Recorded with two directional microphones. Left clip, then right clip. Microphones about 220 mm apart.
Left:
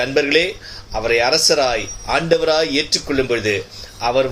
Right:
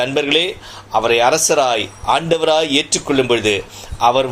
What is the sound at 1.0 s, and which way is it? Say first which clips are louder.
Speech: right 2 dB; 55° right (ahead or behind).